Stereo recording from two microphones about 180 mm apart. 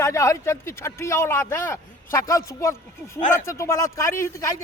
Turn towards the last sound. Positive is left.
turn(degrees=15)  # may be behind; listen again after turning